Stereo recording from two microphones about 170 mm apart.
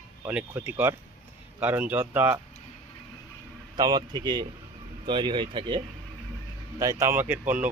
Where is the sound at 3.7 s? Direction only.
25° right (ahead or behind).